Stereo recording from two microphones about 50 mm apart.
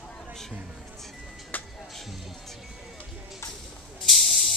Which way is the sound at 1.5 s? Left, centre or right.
Left.